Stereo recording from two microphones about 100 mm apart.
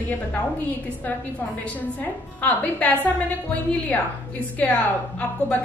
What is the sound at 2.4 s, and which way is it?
A woman's voice, 15° left (ahead or behind).